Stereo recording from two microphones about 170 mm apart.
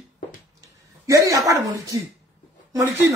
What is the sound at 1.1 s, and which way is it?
Speech, 20° right (ahead or behind).